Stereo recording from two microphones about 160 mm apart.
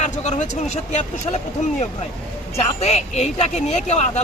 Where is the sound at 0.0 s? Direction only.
45° left (ahead or behind).